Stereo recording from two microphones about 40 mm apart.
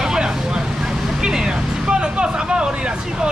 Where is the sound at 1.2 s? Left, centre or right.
Centre.